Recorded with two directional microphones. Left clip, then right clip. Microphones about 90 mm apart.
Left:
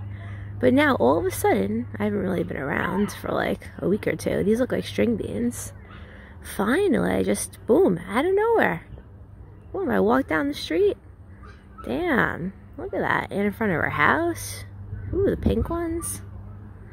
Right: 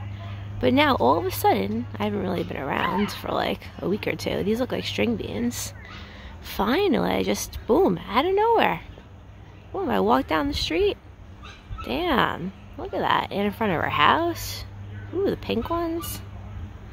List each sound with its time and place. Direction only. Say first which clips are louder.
0.6 s a woman's voice: left 1 dB; 45° left (ahead or behind)
6.4 s a woman's voice: even; 35° left (ahead or behind)